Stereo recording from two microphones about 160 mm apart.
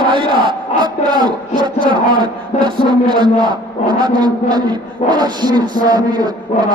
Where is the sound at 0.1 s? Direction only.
30° right (ahead or behind).